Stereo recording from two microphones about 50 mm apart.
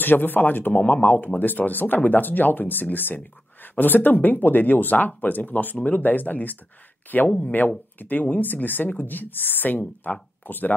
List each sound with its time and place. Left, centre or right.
0.0 s speech: left
7.2 s speech: left
8.0 s speech: left